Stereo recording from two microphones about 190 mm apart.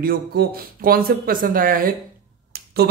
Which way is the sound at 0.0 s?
50° right (ahead or behind).